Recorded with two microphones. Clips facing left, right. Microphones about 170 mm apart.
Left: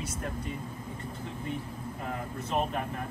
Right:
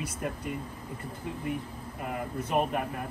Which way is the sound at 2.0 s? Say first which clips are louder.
Right 3 dB; 10° right (ahead or behind).